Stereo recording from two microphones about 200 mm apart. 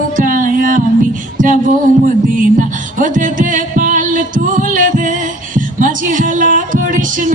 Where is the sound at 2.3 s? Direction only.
40° right (ahead or behind).